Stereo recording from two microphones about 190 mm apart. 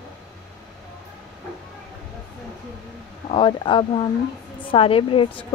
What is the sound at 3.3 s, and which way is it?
A woman's voice, 25° left (ahead or behind).